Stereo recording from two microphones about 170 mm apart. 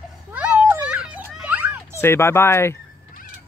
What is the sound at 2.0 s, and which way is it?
Speech, 15° left (ahead or behind).